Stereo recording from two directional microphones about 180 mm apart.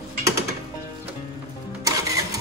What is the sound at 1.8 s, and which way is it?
Music, 20° right (ahead or behind).